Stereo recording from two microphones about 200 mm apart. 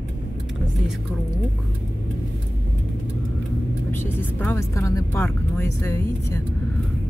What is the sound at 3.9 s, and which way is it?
Speech, 10° left (ahead or behind).